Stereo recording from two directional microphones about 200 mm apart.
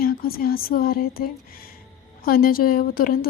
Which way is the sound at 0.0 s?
50° left (ahead or behind).